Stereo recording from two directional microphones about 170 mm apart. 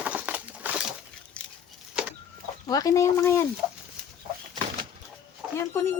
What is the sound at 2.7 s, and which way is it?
Speech, 20° left (ahead or behind).